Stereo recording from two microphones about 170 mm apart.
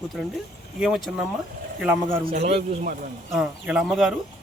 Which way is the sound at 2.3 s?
40° right (ahead or behind).